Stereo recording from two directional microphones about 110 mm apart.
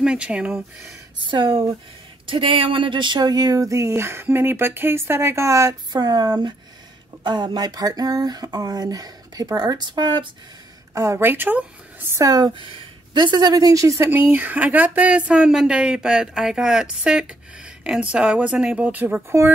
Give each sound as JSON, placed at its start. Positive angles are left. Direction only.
{"t": 0.0, "sound": "speech", "side_deg": -10}
{"t": 1.2, "sound": "speech", "side_deg": -50}
{"t": 7.2, "sound": "a sound", "side_deg": -45}
{"t": 11.0, "sound": "speech", "side_deg": -25}